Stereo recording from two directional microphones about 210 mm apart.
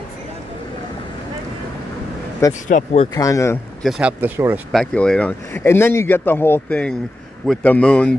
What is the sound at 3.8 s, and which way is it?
Speech, 5° right (ahead or behind).